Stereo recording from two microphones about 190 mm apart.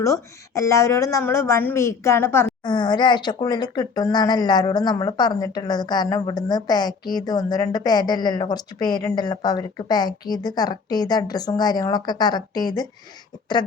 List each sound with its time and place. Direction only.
0.0 s a woman's voice: 15° left (ahead or behind)
2.6 s speech: 25° left (ahead or behind)